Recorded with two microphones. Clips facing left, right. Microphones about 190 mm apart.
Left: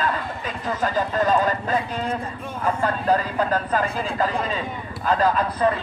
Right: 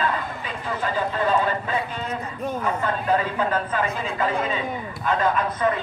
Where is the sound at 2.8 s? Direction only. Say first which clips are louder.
Left 2 dB; 40° left (ahead or behind).